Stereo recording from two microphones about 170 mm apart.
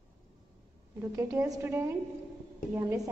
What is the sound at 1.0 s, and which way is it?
A woman's voice, 15° right (ahead or behind).